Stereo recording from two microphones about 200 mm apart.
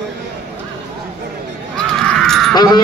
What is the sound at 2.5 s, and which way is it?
Caw, 20° left (ahead or behind).